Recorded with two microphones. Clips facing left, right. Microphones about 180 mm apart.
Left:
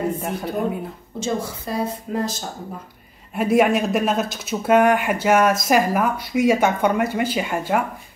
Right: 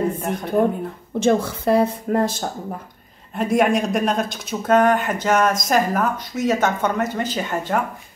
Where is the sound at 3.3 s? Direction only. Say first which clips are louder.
Left 1 dB; 5° left (ahead or behind).